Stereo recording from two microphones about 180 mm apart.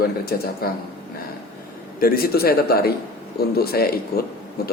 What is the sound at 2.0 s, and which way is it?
Speech, 55° left (ahead or behind).